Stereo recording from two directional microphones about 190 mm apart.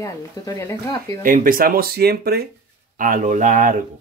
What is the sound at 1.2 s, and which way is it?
Speech, 45° right (ahead or behind).